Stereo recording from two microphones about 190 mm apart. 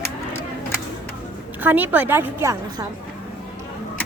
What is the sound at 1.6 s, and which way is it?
A woman's voice, 10° right (ahead or behind).